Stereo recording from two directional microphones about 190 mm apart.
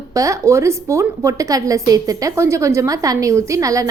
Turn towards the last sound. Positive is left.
turn(degrees=-15)  # may be behind; listen again after turning